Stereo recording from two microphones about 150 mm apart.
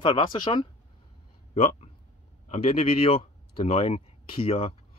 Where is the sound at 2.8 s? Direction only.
40° left (ahead or behind).